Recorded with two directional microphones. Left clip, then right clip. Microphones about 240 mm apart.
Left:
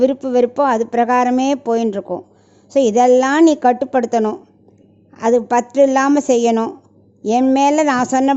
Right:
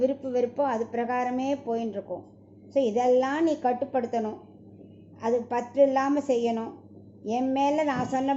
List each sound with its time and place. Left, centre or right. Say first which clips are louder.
0.0 s speech: left 11 dB; left